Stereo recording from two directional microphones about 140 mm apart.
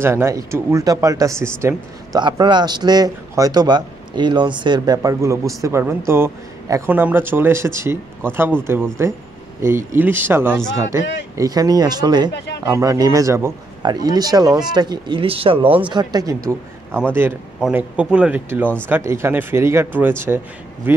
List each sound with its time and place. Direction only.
0.0 s a man's voice: 20° right (ahead or behind)
2.1 s a man's voice: 30° right (ahead or behind)
15.9 s a man's voice: 30° right (ahead or behind)
17.6 s speech: 5° right (ahead or behind)